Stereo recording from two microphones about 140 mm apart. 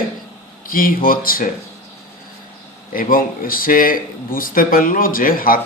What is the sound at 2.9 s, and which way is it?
Speech, 90° left.